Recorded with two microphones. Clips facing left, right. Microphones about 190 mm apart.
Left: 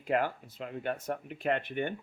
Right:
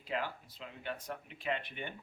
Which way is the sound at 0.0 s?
50° left (ahead or behind).